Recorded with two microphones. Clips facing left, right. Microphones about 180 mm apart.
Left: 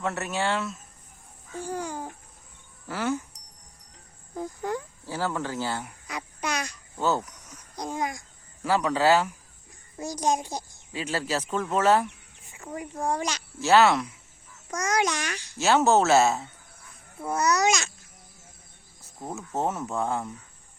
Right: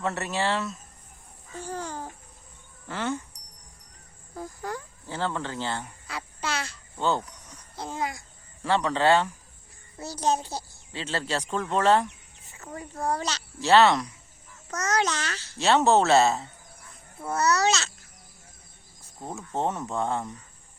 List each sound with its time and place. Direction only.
0.0 s speech: centre (ahead or behind)
1.5 s a child's voice: 10° left (ahead or behind)
4.4 s speech: 20° left (ahead or behind)
5.0 s speech: 10° left (ahead or behind)
6.9 s speech: 5° left (ahead or behind)
8.6 s a child's voice: 10° left (ahead or behind)
15.5 s speech: centre (ahead or behind)
17.2 s a child's voice: 10° left (ahead or behind)
19.2 s speech: centre (ahead or behind)